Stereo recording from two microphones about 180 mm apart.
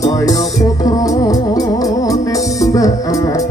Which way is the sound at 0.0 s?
20° left (ahead or behind).